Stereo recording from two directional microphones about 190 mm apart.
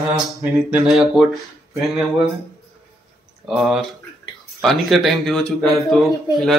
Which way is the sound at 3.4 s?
Centre (ahead or behind).